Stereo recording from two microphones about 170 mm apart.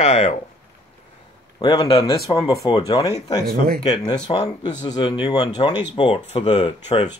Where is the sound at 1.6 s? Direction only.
25° left (ahead or behind).